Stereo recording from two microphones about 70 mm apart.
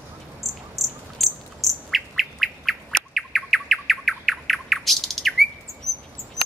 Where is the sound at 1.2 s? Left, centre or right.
Centre.